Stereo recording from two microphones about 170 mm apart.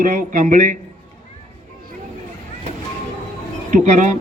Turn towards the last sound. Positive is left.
turn(degrees=-45)  # may be behind; listen again after turning